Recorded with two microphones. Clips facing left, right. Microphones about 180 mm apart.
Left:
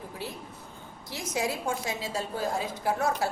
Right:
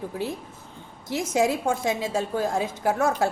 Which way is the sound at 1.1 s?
50° right (ahead or behind).